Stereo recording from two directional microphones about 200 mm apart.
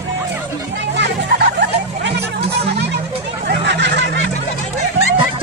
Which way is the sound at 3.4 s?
60° right (ahead or behind).